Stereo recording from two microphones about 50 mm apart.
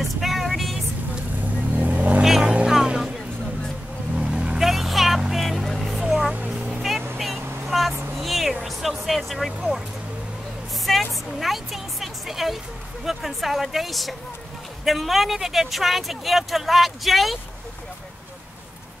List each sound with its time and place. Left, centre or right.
0.2 s vehicle: centre
1.8 s vehicle: right
2.4 s music: centre
2.9 s vehicle: centre
4.2 s vehicle: centre
4.6 s a sound: centre
5.3 s vehicle: centre
8.2 s music: centre
8.6 s vehicle: centre
10.9 s music: centre
13.0 s a sound: centre
14.9 s speech: centre